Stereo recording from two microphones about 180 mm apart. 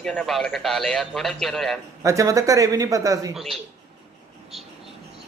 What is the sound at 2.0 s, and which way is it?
A man's voice, 20° right (ahead or behind).